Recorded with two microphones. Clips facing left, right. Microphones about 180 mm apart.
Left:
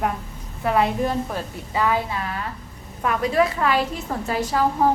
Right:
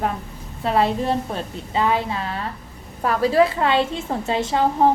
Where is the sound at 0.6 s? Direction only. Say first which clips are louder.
Right 1 dB; 25° right (ahead or behind).